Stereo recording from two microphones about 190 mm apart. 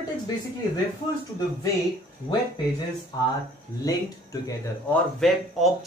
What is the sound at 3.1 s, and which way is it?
Speech, 20° left (ahead or behind).